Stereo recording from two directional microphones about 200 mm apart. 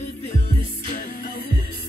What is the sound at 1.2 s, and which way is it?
Music, 50° left (ahead or behind).